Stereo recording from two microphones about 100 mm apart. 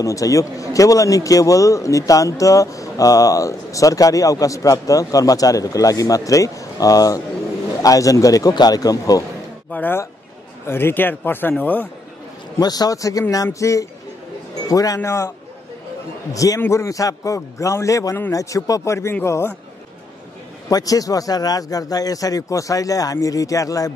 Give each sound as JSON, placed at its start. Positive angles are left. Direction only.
{"t": 0.0, "sound": "a man's voice", "side_deg": 35}
{"t": 9.7, "sound": "a man's voice", "side_deg": 20}
{"t": 12.5, "sound": "a man's voice", "side_deg": 40}
{"t": 16.3, "sound": "a man's voice", "side_deg": 35}
{"t": 20.6, "sound": "a man's voice", "side_deg": 35}